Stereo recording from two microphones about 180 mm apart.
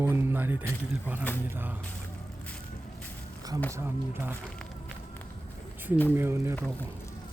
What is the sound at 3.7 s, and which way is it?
Speech, 10° right (ahead or behind).